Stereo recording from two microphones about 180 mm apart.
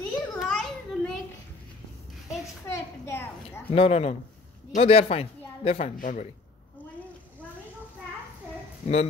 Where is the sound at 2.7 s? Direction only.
15° left (ahead or behind).